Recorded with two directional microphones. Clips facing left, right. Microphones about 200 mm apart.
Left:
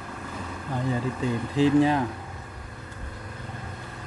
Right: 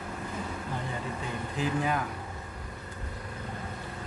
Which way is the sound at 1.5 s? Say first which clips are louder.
Left 10 dB; 30° left (ahead or behind).